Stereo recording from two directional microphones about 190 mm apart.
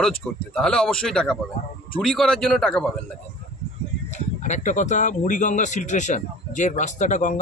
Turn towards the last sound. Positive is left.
turn(degrees=40)  # may be behind; listen again after turning